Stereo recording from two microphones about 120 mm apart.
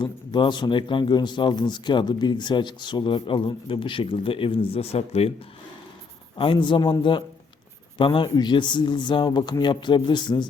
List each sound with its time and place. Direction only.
0.0 s speech: 40° left (ahead or behind); by 5.3 s 60° left (ahead or behind)
6.3 s speech: 45° left (ahead or behind)